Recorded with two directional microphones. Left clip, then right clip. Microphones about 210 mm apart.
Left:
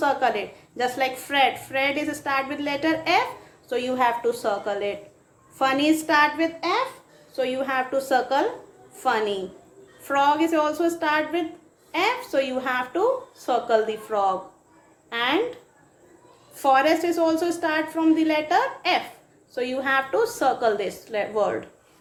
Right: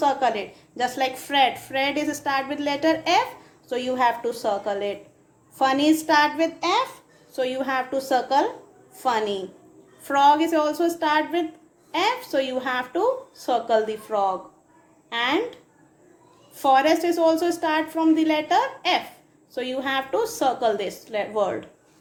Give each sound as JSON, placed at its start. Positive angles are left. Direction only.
{"t": 0.0, "sound": "a woman's voice", "side_deg": -25}
{"t": 16.6, "sound": "a woman's voice", "side_deg": -25}